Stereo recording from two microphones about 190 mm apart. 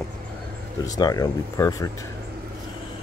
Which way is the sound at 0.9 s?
20° left (ahead or behind).